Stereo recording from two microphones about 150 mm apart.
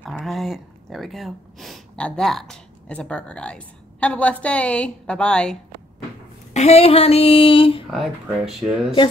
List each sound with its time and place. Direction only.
0.0 s speech: centre (ahead or behind)
6.5 s speech: 45° left (ahead or behind)
7.9 s speech: centre (ahead or behind)